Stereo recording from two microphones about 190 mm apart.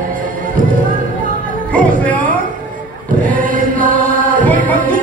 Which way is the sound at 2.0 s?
10° left (ahead or behind).